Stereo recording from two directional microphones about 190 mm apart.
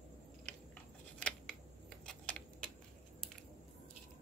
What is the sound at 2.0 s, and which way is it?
Typing, 5° left (ahead or behind).